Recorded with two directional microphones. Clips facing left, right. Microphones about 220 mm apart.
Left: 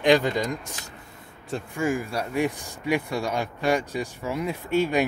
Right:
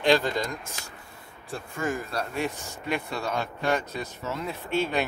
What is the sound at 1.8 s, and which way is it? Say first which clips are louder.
Speech: left 3 dB; 10° left (ahead or behind).